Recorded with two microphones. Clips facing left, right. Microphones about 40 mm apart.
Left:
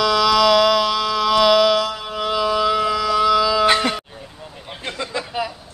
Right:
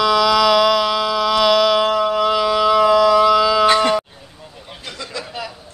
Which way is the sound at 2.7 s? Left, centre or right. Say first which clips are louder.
Right 6 dB; right.